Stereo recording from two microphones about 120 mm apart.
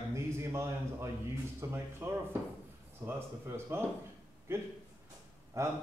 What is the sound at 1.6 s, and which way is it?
Speech, 20° right (ahead or behind).